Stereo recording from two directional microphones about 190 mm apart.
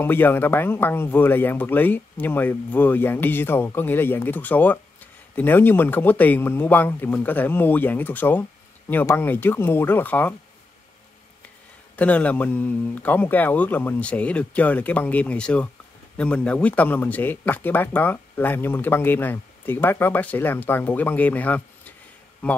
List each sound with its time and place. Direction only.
0.0 s a man's voice: 10° left (ahead or behind)
12.0 s a man's voice: 5° left (ahead or behind)